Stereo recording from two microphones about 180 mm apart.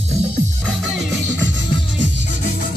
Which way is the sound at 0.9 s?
85° right.